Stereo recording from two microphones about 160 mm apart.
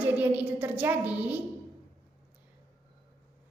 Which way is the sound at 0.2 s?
10° right (ahead or behind).